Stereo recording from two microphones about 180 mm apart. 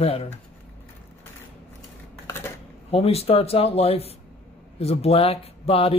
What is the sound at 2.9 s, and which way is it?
Speech, 35° left (ahead or behind).